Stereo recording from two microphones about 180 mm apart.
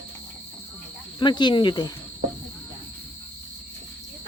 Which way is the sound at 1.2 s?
25° left (ahead or behind).